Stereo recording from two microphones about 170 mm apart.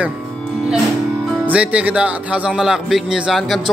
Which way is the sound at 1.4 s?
5° right (ahead or behind).